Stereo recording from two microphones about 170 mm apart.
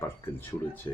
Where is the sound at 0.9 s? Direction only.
25° left (ahead or behind).